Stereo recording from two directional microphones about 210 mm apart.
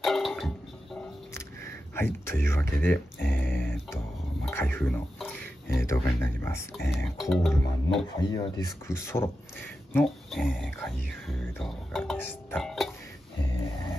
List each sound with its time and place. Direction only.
0.0 s music: centre (ahead or behind)
1.3 s a sound: 10° left (ahead or behind)
4.6 s speech: 10° left (ahead or behind)
8.2 s speech: 20° left (ahead or behind); by 12.9 s centre (ahead or behind)